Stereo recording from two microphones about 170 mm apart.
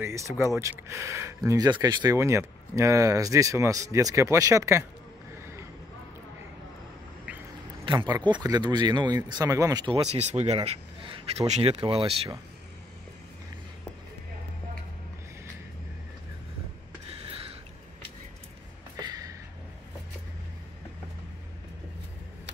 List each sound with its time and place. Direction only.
0.0 s speech: 15° right (ahead or behind)
7.8 s speech: 25° right (ahead or behind)
18.9 s a sound: 20° right (ahead or behind)